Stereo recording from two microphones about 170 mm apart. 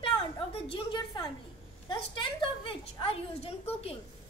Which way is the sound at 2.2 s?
30° left (ahead or behind).